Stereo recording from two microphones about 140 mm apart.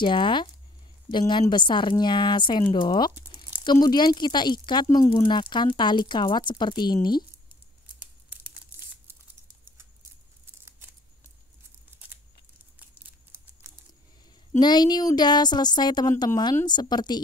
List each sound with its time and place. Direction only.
0.0 s speech: 35° left (ahead or behind)
7.8 s tearing: 10° right (ahead or behind)
10.4 s scissors: 15° right (ahead or behind)
13.3 s a sound: 20° right (ahead or behind)
14.6 s speech: 30° left (ahead or behind)